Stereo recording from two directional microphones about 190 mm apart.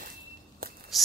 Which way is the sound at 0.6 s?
50° right (ahead or behind).